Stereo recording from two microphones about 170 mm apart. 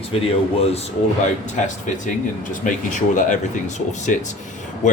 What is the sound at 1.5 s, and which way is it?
Speech, 45° left (ahead or behind).